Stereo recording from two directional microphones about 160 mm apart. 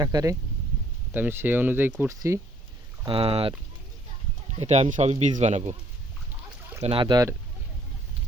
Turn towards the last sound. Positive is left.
turn(degrees=-25)  # may be behind; listen again after turning